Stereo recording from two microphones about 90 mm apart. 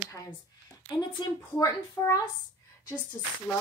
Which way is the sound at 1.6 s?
40° left (ahead or behind).